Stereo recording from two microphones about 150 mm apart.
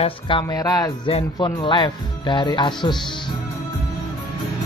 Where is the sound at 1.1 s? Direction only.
35° left (ahead or behind).